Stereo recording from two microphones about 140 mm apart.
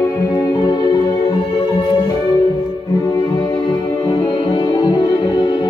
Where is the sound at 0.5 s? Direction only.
30° left (ahead or behind).